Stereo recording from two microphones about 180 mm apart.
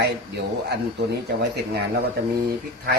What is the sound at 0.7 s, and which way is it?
Speech, 70° right (ahead or behind).